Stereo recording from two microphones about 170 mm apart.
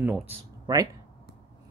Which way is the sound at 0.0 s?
10° right (ahead or behind).